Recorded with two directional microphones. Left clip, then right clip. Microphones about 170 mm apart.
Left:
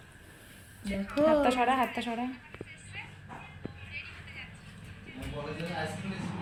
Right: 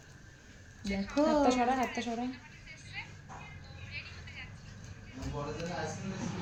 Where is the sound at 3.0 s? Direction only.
55° right (ahead or behind).